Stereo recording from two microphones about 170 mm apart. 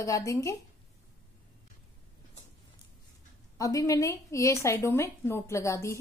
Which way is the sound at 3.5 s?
20° left (ahead or behind).